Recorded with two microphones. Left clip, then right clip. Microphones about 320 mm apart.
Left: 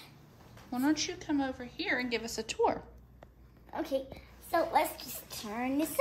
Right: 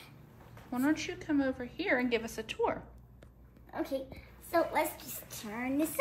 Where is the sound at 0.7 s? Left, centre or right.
Centre.